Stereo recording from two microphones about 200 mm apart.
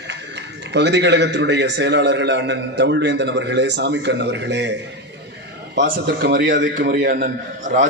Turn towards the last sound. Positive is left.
turn(degrees=-45)  # may be behind; listen again after turning